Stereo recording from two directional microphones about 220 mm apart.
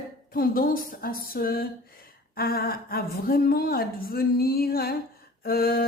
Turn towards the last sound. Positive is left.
turn(degrees=45)  # may be behind; listen again after turning